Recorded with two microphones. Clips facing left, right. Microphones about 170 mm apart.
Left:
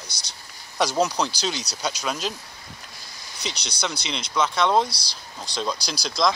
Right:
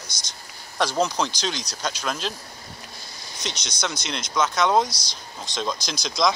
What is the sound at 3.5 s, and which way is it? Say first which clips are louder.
Speech: even; 35° left (ahead or behind).